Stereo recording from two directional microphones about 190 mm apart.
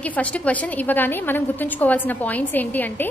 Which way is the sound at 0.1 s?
5° left (ahead or behind).